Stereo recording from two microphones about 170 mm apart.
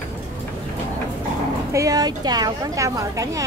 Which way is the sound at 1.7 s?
20° right (ahead or behind).